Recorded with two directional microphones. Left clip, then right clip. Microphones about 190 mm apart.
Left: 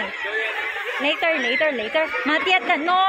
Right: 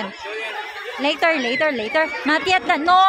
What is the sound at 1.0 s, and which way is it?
A woman's voice, 30° right (ahead or behind).